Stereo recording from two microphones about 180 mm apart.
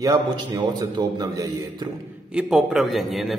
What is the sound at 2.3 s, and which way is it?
A man's voice, centre (ahead or behind).